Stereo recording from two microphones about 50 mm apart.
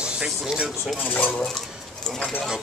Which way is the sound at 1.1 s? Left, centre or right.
Left.